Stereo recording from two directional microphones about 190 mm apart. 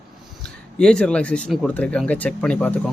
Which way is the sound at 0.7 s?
5° left (ahead or behind).